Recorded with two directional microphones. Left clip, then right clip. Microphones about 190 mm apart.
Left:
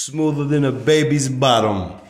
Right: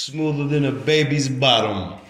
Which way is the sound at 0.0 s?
40° left (ahead or behind).